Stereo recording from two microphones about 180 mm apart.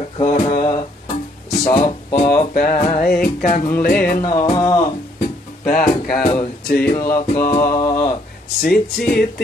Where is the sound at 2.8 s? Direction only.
55° left (ahead or behind).